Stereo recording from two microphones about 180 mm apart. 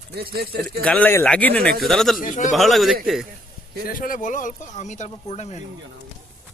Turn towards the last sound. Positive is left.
turn(degrees=40)  # may be behind; listen again after turning